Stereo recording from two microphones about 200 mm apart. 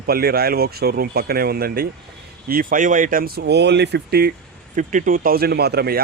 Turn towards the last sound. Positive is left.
turn(degrees=-50)  # may be behind; listen again after turning